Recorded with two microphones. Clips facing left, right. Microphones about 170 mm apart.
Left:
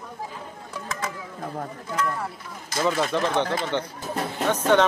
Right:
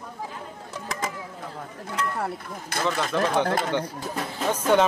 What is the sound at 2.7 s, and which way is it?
Speech, 60° right (ahead or behind).